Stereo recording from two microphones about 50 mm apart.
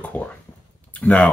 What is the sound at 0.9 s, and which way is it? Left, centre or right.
Speech, left.